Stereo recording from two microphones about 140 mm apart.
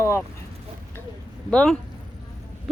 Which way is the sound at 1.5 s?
5° left (ahead or behind).